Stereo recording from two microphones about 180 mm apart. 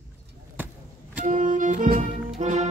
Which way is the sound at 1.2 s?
45° right (ahead or behind).